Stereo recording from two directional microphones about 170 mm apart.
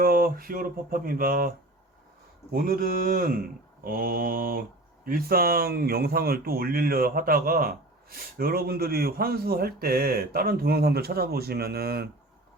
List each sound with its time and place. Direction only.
0.0 s speech: 60° right (ahead or behind)